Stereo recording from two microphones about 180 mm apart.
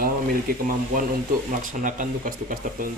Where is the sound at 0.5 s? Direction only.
55° right (ahead or behind).